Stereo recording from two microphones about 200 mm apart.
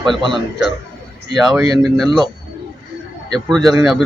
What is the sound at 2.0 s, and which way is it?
Speech, 20° right (ahead or behind).